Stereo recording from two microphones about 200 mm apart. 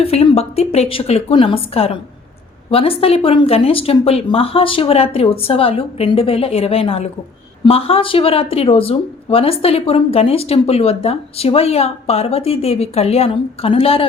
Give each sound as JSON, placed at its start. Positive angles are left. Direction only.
{"t": 0.0, "sound": "speech", "side_deg": 30}